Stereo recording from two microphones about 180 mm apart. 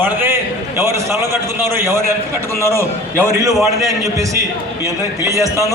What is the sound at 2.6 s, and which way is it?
Speech, 15° left (ahead or behind).